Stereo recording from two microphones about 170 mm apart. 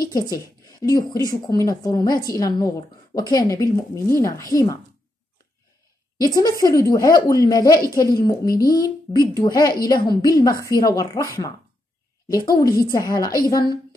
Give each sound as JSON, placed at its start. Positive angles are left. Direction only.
{"t": 0.0, "sound": "a woman's voice", "side_deg": 20}
{"t": 6.1, "sound": "a woman's voice", "side_deg": 20}